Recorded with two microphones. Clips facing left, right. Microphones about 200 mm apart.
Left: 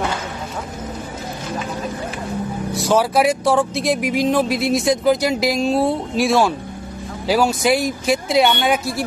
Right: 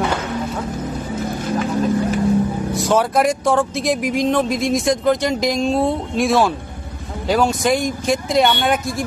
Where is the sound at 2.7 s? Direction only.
Centre (ahead or behind).